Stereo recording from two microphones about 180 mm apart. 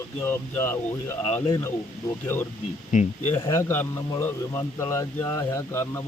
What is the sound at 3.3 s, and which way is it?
A man's voice, 15° left (ahead or behind).